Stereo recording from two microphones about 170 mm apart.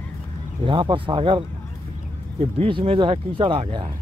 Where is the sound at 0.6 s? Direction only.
30° right (ahead or behind).